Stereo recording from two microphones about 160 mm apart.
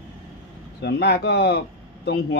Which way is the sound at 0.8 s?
90° left.